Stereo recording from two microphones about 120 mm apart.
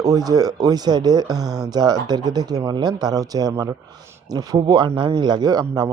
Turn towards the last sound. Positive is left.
turn(degrees=-35)  # may be behind; listen again after turning